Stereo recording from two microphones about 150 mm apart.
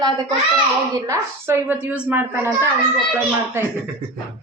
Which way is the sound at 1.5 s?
10° right (ahead or behind).